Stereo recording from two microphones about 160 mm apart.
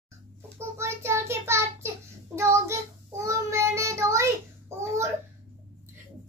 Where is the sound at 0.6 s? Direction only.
15° right (ahead or behind).